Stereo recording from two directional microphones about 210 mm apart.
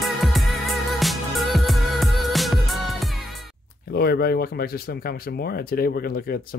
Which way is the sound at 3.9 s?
50° left (ahead or behind).